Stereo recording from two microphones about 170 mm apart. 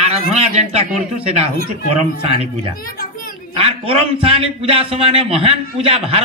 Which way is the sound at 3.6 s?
35° right (ahead or behind).